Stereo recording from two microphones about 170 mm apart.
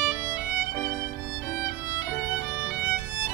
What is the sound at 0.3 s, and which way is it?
Violin, 15° left (ahead or behind).